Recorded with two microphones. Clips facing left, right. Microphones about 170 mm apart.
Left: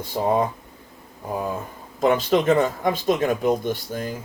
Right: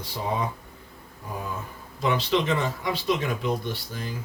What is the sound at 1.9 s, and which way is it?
Speech, 45° left (ahead or behind).